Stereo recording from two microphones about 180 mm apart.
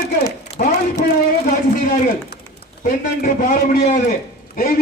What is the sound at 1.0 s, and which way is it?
A man's voice, 45° left (ahead or behind).